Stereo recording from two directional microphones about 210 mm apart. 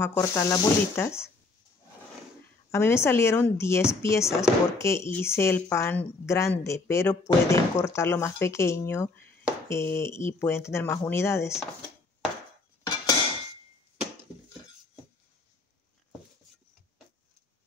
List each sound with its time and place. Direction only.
0.0 s speech: 15° left (ahead or behind)
2.7 s speech: 10° left (ahead or behind)
12.8 s dishes: 20° left (ahead or behind)